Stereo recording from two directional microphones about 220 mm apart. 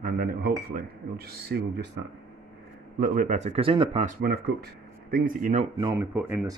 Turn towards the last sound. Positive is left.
turn(degrees=-5)  # may be behind; listen again after turning